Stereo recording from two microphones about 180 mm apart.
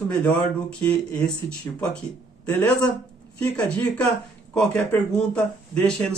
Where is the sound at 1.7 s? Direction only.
15° left (ahead or behind).